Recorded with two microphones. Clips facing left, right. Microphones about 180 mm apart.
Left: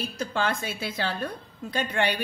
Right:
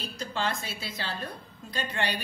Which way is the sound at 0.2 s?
55° left (ahead or behind).